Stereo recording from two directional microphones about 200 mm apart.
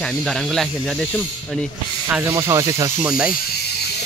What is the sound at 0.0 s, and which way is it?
Speech, centre (ahead or behind).